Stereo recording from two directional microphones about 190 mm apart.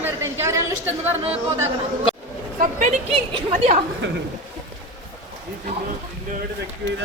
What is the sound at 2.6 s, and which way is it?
A woman's voice, 40° right (ahead or behind).